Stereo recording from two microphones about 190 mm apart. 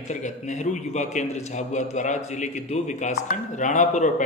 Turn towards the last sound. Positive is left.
turn(degrees=40)  # may be behind; listen again after turning